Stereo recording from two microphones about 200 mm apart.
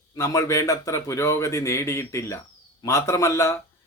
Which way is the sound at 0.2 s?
15° left (ahead or behind).